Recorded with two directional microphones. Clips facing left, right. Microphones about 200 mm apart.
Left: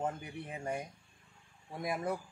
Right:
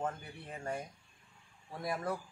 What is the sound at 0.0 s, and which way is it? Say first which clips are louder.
Speech: left 2 dB; 15° left (ahead or behind).